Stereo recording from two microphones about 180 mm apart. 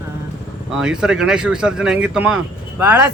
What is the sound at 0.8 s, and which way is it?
Speech, 5° right (ahead or behind).